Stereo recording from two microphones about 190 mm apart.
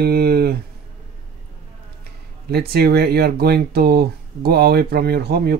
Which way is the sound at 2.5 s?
55° right (ahead or behind).